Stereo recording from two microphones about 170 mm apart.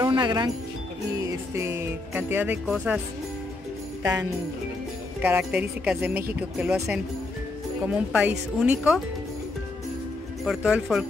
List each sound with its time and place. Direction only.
0.0 s music: 25° right (ahead or behind)
1.2 s speech: 15° right (ahead or behind)
5.2 s speech: 10° right (ahead or behind)
10.4 s speech: 5° right (ahead or behind)